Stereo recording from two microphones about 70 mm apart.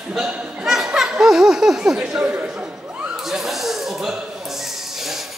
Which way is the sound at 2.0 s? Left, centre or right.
Centre.